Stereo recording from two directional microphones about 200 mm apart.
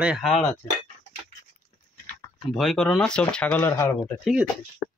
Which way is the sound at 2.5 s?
Centre (ahead or behind).